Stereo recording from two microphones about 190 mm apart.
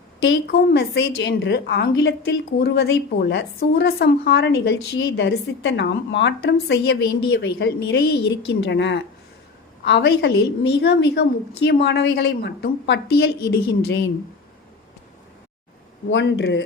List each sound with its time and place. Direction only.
0.4 s a woman's voice: 60° left (ahead or behind); by 2.1 s 75° left (ahead or behind)
2.6 s a woman's voice: 60° left (ahead or behind)
16.0 s speech: 70° left (ahead or behind)